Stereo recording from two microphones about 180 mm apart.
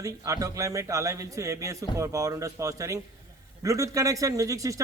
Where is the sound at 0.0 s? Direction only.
20° right (ahead or behind).